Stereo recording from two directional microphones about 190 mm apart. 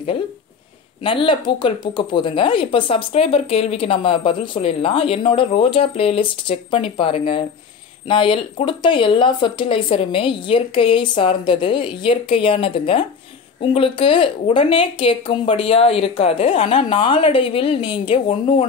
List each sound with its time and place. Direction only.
1.0 s speech: 25° left (ahead or behind)